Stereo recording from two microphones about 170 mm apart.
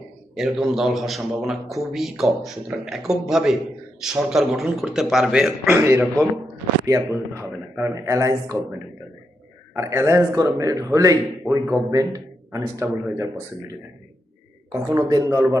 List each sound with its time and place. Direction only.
0.3 s a man's voice: centre (ahead or behind); by 8.5 s 20° right (ahead or behind)
9.7 s a man's voice: 15° right (ahead or behind)
14.7 s a man's voice: 20° right (ahead or behind)